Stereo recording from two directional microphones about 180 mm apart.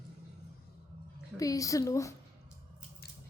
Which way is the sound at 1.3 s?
20° left (ahead or behind).